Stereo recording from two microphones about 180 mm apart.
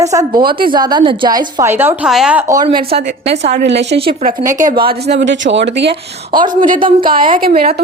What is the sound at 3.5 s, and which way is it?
Speech, 65° right (ahead or behind).